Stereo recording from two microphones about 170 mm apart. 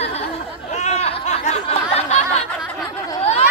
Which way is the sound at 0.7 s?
40° left (ahead or behind).